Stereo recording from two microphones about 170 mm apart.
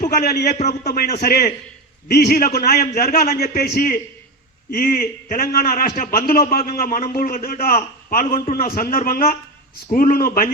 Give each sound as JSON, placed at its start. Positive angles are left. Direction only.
{"t": 0.1, "sound": "a man's voice", "side_deg": 65}
{"t": 0.5, "sound": "a man's voice", "side_deg": 45}
{"t": 0.9, "sound": "a man's voice", "side_deg": 70}